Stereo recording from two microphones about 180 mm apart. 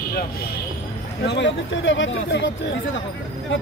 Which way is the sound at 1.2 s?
85° left.